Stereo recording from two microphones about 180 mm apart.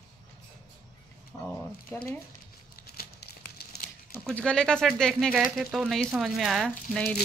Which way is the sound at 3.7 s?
60° left (ahead or behind).